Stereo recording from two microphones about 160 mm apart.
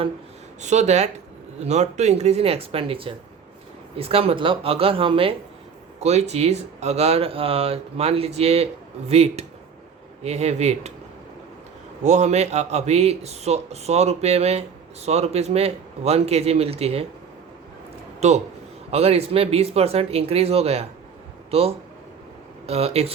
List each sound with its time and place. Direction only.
0.6 s speech: 45° right (ahead or behind)
12.0 s speech: 45° right (ahead or behind)
18.2 s speech: 45° right (ahead or behind)